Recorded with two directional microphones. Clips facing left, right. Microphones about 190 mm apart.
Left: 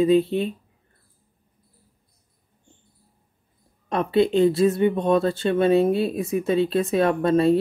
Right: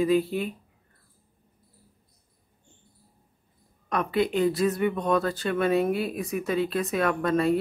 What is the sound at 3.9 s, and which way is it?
Speech, 25° left (ahead or behind).